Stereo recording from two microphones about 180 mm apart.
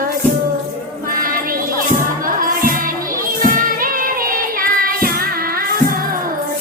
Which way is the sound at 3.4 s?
50° right (ahead or behind).